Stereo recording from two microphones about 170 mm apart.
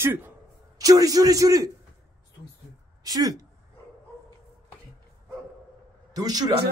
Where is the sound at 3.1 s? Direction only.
20° right (ahead or behind).